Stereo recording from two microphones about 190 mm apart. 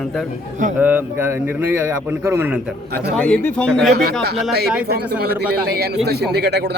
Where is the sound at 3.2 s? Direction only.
5° left (ahead or behind).